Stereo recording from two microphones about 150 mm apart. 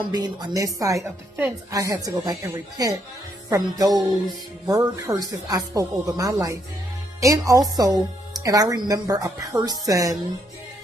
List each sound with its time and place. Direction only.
0.0 s speech: 30° right (ahead or behind)